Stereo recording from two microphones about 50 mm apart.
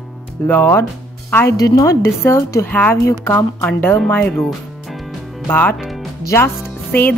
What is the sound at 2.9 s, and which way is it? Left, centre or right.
Speech, left.